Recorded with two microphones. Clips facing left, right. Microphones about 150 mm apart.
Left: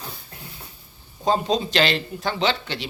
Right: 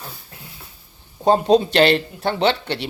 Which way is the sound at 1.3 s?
60° right (ahead or behind).